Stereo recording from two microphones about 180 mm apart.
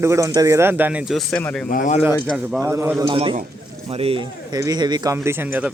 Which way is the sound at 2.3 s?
Centre (ahead or behind).